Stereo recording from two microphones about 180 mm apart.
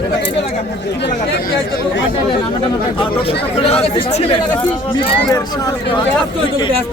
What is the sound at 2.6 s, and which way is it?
Speech, 30° left (ahead or behind).